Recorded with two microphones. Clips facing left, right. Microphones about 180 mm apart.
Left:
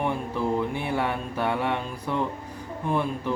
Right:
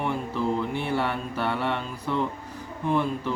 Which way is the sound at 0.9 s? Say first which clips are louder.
Even; 15° left (ahead or behind).